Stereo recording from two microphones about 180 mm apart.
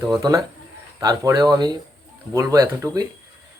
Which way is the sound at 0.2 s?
20° right (ahead or behind).